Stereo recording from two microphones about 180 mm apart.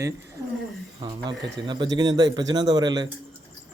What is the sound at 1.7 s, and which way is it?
Speech, 25° right (ahead or behind).